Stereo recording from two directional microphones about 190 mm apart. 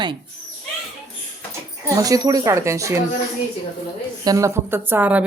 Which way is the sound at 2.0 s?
20° right (ahead or behind).